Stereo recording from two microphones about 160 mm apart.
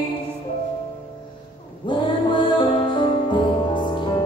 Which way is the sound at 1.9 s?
30° left (ahead or behind).